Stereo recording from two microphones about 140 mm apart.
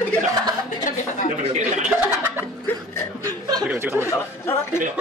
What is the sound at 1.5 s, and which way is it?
Speech, 60° right (ahead or behind).